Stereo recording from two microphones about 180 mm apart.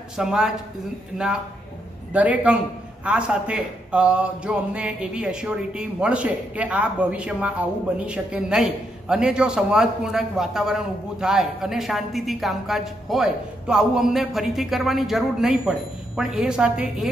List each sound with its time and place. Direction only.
0.2 s a man's voice: 5° right (ahead or behind)